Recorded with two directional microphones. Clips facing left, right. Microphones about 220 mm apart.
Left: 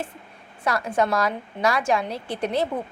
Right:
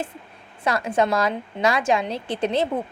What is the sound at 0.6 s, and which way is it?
A woman's voice, 20° right (ahead or behind).